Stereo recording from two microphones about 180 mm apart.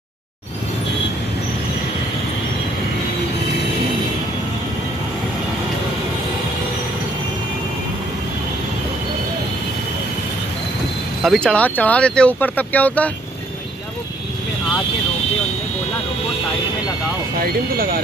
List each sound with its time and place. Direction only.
11.2 s speech: 5° left (ahead or behind)
17.4 s speech: 55° right (ahead or behind)